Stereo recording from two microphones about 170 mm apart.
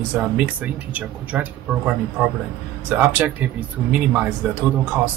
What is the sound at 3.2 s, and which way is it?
Speech, 10° right (ahead or behind).